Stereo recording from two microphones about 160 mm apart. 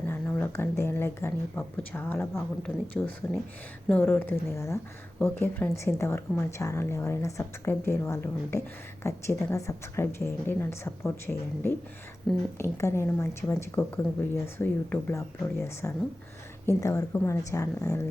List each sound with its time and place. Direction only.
0.0 s speech: 15° left (ahead or behind)
3.0 s a woman's voice: 5° left (ahead or behind); by 18.0 s 20° left (ahead or behind)